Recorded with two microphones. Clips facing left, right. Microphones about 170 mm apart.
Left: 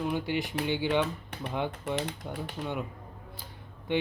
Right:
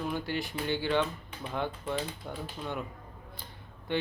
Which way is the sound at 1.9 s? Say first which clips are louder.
Left 2 dB; 80° left.